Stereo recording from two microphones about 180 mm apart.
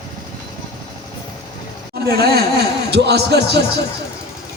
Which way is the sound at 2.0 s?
60° right (ahead or behind).